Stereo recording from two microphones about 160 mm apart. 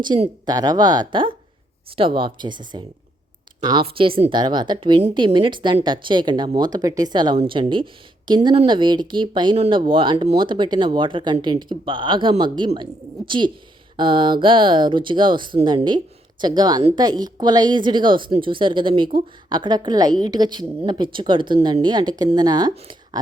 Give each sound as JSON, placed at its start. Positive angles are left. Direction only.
{"t": 0.1, "sound": "speech", "side_deg": -30}